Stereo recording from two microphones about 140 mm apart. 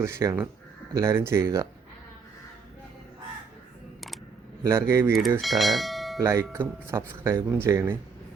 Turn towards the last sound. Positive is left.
turn(degrees=-15)  # may be behind; listen again after turning